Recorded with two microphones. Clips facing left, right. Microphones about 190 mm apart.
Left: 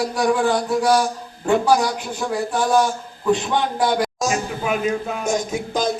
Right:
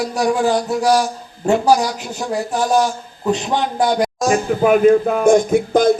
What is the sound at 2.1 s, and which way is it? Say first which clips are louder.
Speech: right 3 dB; 20° right (ahead or behind).